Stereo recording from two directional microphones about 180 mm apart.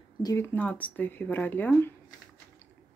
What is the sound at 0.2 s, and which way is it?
Speech, 15° left (ahead or behind).